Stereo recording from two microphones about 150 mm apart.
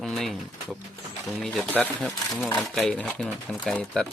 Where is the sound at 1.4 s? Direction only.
Centre (ahead or behind).